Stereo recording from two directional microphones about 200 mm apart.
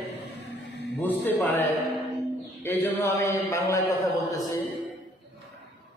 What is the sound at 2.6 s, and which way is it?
Mantra, 10° left (ahead or behind).